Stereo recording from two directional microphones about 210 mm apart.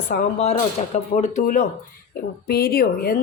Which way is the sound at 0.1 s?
35° left (ahead or behind).